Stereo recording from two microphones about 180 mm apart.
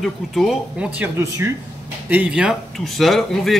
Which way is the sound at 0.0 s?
Centre (ahead or behind).